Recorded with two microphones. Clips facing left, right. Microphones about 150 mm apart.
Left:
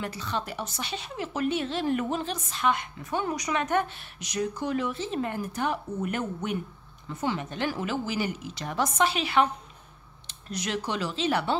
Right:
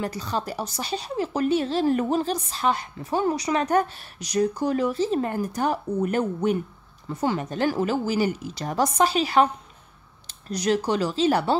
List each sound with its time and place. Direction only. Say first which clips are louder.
0.0 s speech: right 4 dB; 35° right (ahead or behind)